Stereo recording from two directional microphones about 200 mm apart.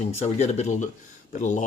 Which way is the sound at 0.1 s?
35° left (ahead or behind).